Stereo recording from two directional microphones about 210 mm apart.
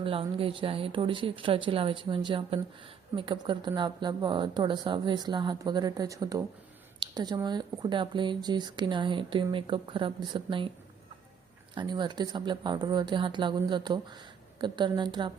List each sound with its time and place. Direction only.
0.0 s speech: 25° right (ahead or behind)
11.7 s speech: 20° right (ahead or behind)